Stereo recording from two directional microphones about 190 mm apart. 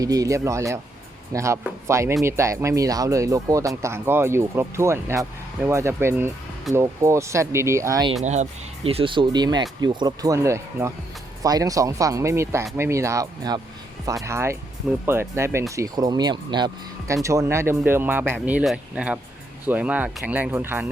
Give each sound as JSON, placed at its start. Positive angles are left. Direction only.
{"t": 0.0, "sound": "speech", "side_deg": -20}
{"t": 8.2, "sound": "speech", "side_deg": -35}